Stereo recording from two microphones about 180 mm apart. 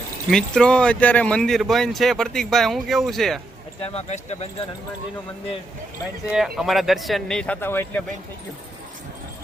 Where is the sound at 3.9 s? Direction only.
35° left (ahead or behind).